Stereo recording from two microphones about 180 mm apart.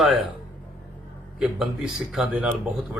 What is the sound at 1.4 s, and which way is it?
Speech, centre (ahead or behind).